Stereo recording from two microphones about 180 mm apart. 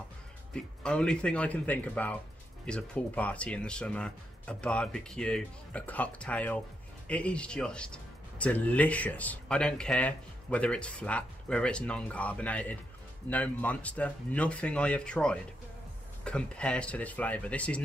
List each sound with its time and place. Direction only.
0.5 s speech: 5° left (ahead or behind)